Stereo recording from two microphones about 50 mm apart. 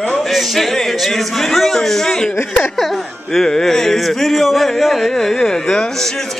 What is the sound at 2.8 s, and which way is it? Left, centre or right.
Music, centre.